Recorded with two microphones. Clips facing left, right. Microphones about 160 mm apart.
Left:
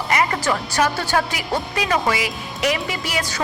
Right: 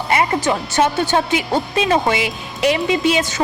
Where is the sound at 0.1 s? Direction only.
25° right (ahead or behind).